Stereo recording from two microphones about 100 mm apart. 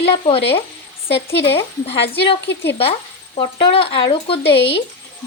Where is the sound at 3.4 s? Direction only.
60° left (ahead or behind).